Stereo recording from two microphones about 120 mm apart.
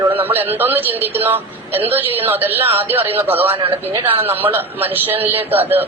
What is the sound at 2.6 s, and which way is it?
Speech, 55° right (ahead or behind).